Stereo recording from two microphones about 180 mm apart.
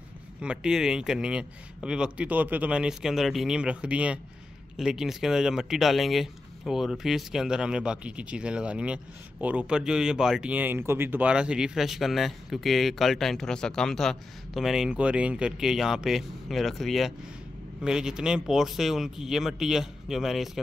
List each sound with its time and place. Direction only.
0.4 s speech: 5° right (ahead or behind)